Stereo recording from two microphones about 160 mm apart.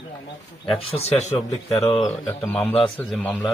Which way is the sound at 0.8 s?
40° left (ahead or behind).